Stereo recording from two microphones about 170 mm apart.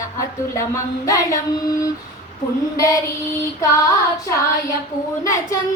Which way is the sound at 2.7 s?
20° left (ahead or behind).